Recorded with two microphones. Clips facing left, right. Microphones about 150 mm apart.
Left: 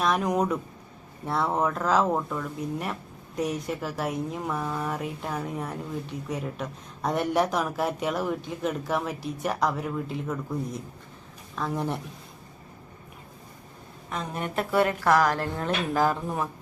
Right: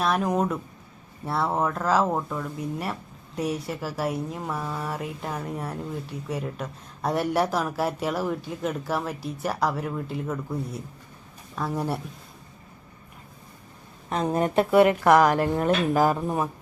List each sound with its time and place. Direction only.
0.0 s a woman's voice: centre (ahead or behind)
14.1 s a woman's voice: 40° right (ahead or behind); by 16.5 s 15° right (ahead or behind)